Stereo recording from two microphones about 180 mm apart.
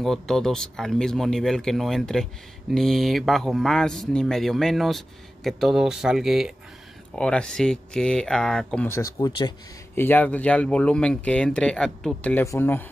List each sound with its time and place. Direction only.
0.0 s speech: centre (ahead or behind)